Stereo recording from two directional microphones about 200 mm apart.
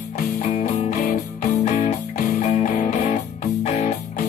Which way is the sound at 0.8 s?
40° left (ahead or behind).